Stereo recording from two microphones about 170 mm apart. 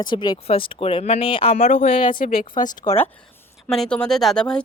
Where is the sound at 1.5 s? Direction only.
45° left (ahead or behind).